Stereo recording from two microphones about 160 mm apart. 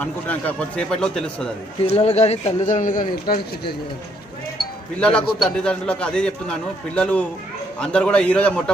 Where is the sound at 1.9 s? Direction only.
40° left (ahead or behind); by 3.7 s 65° left (ahead or behind).